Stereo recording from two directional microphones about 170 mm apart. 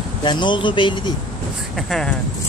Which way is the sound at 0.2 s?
25° left (ahead or behind).